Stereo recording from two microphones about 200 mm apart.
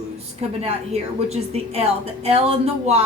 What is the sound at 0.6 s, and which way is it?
Speech, 30° right (ahead or behind).